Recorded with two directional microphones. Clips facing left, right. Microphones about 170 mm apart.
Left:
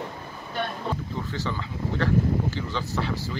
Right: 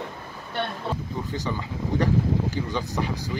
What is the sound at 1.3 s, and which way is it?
Speech, 15° right (ahead or behind).